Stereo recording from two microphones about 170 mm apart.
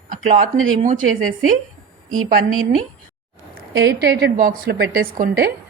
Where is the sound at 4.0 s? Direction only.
70° right (ahead or behind).